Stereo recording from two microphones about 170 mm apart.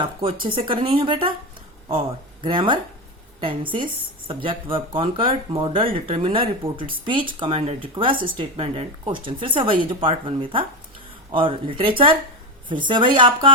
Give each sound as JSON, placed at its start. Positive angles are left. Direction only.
{"t": 0.0, "sound": "speech", "side_deg": -30}
{"t": 2.4, "sound": "speech", "side_deg": -30}